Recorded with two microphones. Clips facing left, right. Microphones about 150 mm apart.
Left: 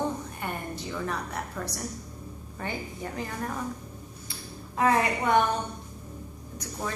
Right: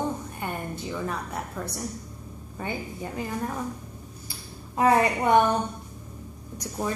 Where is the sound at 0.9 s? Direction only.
5° right (ahead or behind).